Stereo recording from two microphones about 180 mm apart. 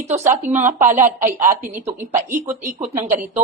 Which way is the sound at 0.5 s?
40° right (ahead or behind).